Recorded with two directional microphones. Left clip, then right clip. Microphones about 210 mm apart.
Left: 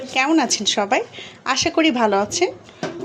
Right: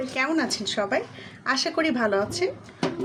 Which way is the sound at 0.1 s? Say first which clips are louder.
Left 9 dB; 20° left (ahead or behind).